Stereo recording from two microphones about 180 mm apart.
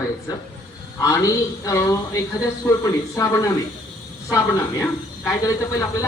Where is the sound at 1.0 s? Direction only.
15° left (ahead or behind).